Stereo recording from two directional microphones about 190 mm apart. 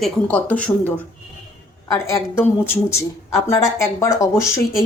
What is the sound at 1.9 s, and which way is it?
Speech, 15° left (ahead or behind).